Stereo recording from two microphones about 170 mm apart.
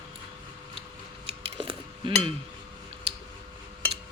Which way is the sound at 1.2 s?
30° right (ahead or behind).